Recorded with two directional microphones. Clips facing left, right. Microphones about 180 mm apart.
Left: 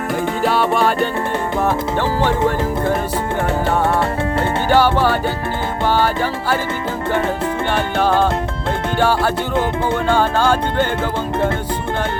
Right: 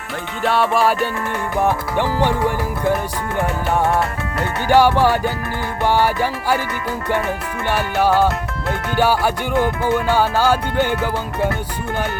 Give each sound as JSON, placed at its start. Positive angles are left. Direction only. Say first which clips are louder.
{"t": 0.4, "sound": "music", "louder": "right 1 dB", "side_deg": 0}
{"t": 1.6, "sound": "speech", "louder": "right 1 dB", "side_deg": -15}
{"t": 4.7, "sound": "speech", "louder": "right 2 dB", "side_deg": -15}
{"t": 7.9, "sound": "speech", "louder": "right 1 dB", "side_deg": -10}